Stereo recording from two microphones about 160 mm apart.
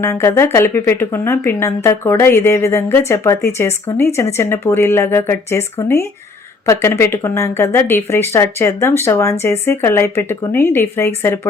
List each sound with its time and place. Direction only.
0.0 s a woman's voice: 15° left (ahead or behind)